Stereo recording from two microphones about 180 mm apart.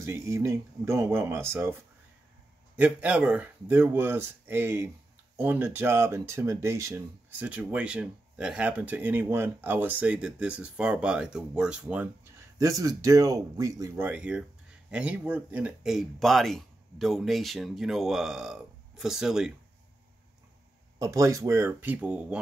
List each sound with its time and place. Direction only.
0.0 s speech: 15° right (ahead or behind)
12.5 s speech: 20° right (ahead or behind); by 19.5 s 5° right (ahead or behind)
21.0 s speech: 15° right (ahead or behind)